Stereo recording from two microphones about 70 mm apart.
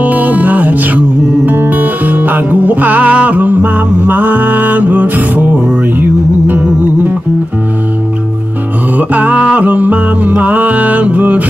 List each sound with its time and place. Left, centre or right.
0.0 s music: right
8.9 s music: right